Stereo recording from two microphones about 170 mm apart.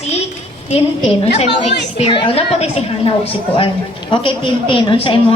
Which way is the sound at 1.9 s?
35° left (ahead or behind).